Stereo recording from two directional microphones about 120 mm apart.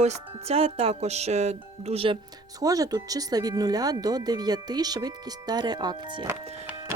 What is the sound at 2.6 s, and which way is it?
Speech, 30° right (ahead or behind).